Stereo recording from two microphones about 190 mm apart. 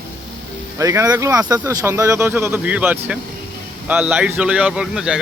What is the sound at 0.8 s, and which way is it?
A man's voice, 15° right (ahead or behind).